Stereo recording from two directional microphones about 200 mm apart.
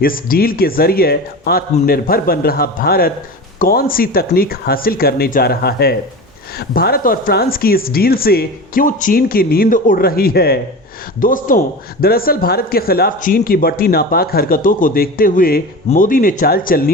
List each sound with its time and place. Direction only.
0.0 s speech: 45° left (ahead or behind)